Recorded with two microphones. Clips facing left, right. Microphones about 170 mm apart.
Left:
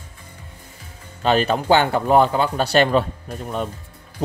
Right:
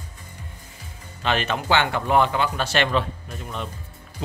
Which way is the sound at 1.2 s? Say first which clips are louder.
Left 6 dB; 35° left (ahead or behind).